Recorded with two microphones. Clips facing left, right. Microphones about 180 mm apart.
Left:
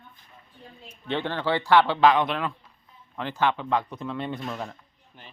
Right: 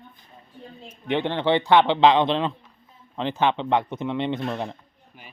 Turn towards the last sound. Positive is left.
turn(degrees=-10)  # may be behind; listen again after turning